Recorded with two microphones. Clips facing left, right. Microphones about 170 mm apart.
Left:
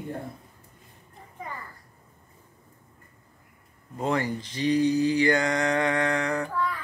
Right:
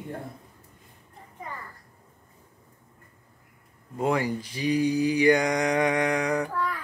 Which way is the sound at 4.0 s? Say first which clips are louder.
Right 1 dB; 10° right (ahead or behind).